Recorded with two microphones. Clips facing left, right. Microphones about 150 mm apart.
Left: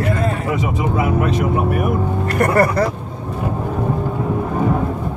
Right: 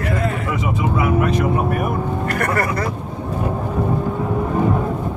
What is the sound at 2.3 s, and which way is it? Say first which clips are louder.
Speech: left 8 dB; 30° left (ahead or behind).